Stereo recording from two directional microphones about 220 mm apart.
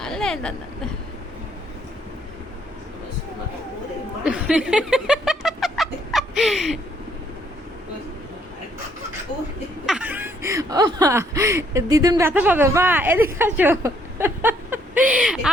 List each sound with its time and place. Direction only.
0.0 s a sound: centre (ahead or behind)
4.3 s cat: 5° right (ahead or behind)
9.8 s speech: 5° right (ahead or behind)